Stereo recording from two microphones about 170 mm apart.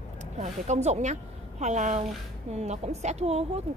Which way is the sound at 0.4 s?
40° right (ahead or behind).